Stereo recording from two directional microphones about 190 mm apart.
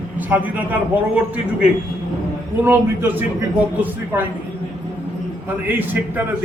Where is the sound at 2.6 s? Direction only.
10° right (ahead or behind).